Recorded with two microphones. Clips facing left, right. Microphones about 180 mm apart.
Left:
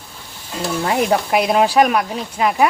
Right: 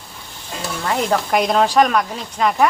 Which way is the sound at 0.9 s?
15° left (ahead or behind).